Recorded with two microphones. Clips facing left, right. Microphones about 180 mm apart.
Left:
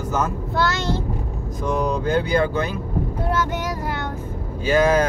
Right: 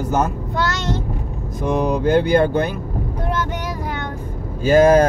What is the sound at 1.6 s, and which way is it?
Speech, 65° right (ahead or behind).